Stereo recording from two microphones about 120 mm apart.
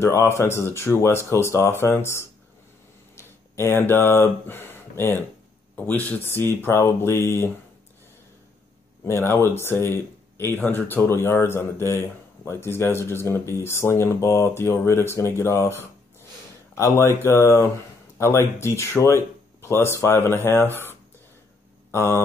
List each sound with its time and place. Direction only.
0.0 s speech: 20° left (ahead or behind)
9.0 s speech: 20° left (ahead or behind)
21.9 s mantra: 20° left (ahead or behind)